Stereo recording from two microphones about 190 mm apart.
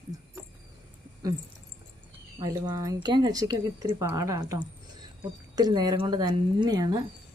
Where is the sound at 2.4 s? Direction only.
20° right (ahead or behind).